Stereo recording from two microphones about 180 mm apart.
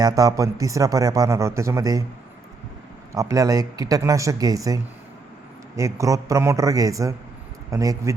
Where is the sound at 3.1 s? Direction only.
15° right (ahead or behind).